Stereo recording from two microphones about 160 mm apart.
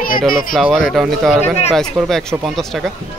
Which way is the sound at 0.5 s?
Centre (ahead or behind).